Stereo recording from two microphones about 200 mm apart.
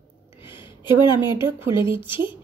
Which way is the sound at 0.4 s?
25° left (ahead or behind).